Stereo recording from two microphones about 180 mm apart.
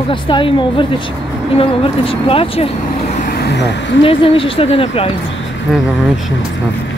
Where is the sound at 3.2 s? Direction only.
65° left (ahead or behind).